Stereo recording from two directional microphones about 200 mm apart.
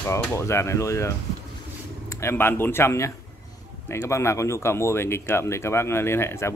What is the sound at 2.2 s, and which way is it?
Speech, 10° left (ahead or behind).